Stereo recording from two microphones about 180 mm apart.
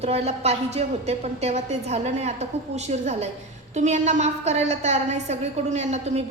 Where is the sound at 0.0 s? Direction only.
35° right (ahead or behind).